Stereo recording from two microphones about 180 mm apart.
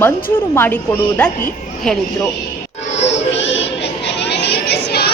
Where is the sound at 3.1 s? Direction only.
85° left.